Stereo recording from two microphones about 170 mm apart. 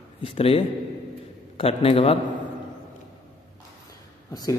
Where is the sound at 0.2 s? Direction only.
35° left (ahead or behind).